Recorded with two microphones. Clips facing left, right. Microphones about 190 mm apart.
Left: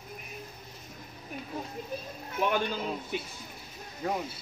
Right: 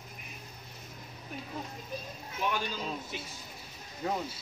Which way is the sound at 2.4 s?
55° left (ahead or behind).